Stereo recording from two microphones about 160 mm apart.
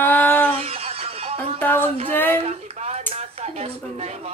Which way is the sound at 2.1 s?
10° left (ahead or behind).